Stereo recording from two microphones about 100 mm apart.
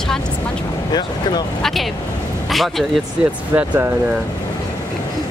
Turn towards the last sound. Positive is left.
turn(degrees=-15)  # may be behind; listen again after turning